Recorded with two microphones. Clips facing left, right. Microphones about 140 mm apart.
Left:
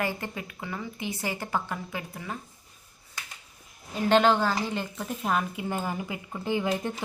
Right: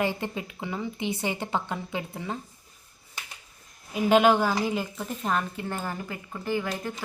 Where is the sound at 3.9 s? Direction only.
10° right (ahead or behind).